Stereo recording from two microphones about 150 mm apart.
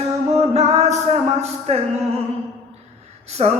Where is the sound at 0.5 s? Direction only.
45° right (ahead or behind).